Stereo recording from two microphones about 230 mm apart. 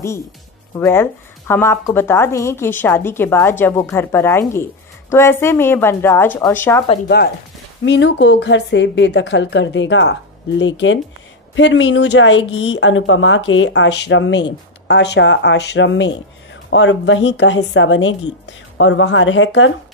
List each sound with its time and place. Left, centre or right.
0.7 s a woman's voice: centre
7.8 s speech: left